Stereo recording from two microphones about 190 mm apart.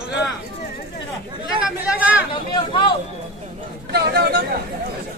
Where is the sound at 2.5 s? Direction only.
25° left (ahead or behind).